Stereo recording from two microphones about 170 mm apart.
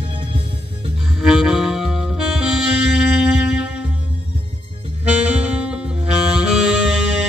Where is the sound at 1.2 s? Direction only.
5° right (ahead or behind).